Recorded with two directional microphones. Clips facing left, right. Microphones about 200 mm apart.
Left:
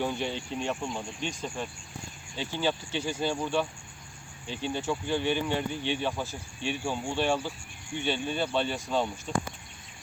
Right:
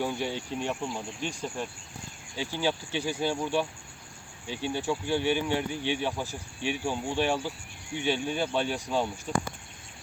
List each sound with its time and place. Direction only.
0.0 s speech: 10° right (ahead or behind)